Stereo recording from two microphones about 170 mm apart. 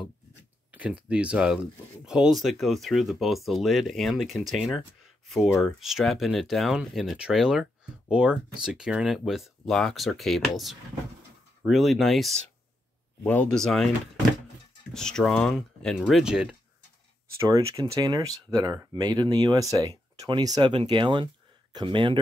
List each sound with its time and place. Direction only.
0.7 s speech: 10° right (ahead or behind)
15.0 s speech: 5° left (ahead or behind)
17.4 s speech: 20° right (ahead or behind)